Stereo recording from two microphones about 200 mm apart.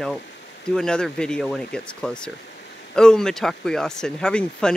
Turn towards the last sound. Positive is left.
turn(degrees=5)  # may be behind; listen again after turning